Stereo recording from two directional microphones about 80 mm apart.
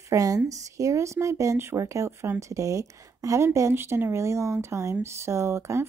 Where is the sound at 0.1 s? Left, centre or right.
Right.